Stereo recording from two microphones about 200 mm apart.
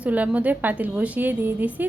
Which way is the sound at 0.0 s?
5° right (ahead or behind).